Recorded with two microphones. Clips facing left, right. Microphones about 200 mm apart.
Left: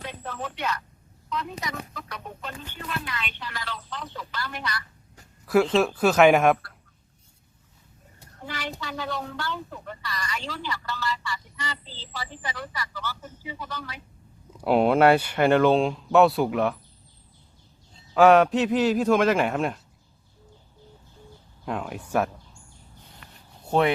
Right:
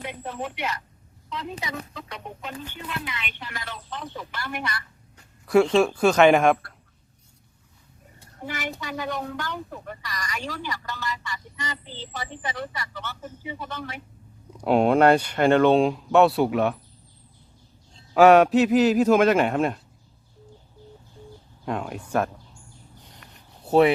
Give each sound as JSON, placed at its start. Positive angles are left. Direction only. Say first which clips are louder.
{"t": 0.0, "sound": "speech", "louder": "right 2 dB", "side_deg": -15}
{"t": 6.0, "sound": "speech", "louder": "even", "side_deg": 5}
{"t": 8.2, "sound": "a sound", "louder": "right 3 dB", "side_deg": -15}
{"t": 8.8, "sound": "a woman's voice", "louder": "right 2 dB", "side_deg": -15}
{"t": 14.6, "sound": "speech", "louder": "right 1 dB", "side_deg": 5}
{"t": 18.1, "sound": "speech", "louder": "right 2 dB", "side_deg": -5}
{"t": 21.6, "sound": "speech", "louder": "right 2 dB", "side_deg": 0}